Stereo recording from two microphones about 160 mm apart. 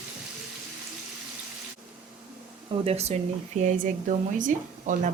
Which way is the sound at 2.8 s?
40° right (ahead or behind).